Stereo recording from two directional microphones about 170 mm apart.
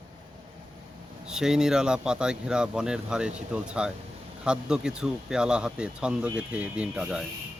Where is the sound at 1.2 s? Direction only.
5° right (ahead or behind).